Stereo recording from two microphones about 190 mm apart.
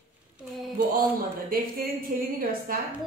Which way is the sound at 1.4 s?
50° right (ahead or behind).